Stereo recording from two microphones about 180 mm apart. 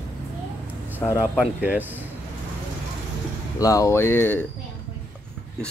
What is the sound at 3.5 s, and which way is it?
Speech, 20° left (ahead or behind).